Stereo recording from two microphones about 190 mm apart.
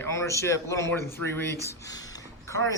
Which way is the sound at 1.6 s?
20° left (ahead or behind).